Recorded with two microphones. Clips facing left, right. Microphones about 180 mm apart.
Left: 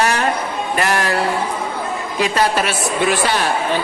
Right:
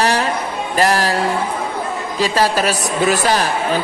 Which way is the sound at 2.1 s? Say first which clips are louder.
Right 1 dB; 35° right (ahead or behind).